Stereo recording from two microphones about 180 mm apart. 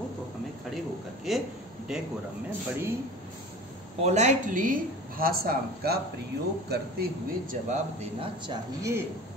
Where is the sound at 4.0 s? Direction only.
40° right (ahead or behind); by 6.9 s 65° right (ahead or behind).